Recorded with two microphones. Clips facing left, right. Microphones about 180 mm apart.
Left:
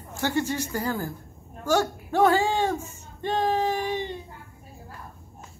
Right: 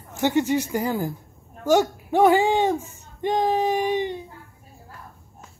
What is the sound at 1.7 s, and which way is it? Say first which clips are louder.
Speech: right 5 dB; 15° right (ahead or behind).